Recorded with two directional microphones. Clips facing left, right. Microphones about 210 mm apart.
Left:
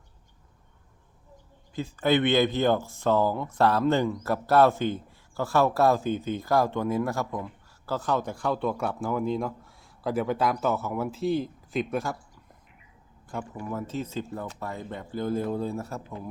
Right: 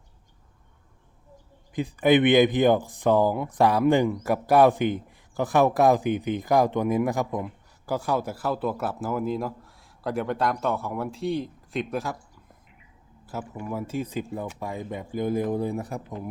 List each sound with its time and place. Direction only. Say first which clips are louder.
1.7 s speech: right 4 dB; 15° right (ahead or behind); by 12.1 s centre (ahead or behind)
13.2 s speech: right 1 dB; 5° right (ahead or behind)